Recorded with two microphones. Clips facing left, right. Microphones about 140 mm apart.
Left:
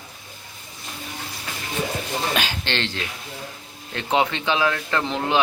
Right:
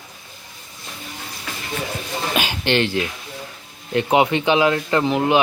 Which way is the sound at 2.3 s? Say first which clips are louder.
Right 5 dB; 10° right (ahead or behind).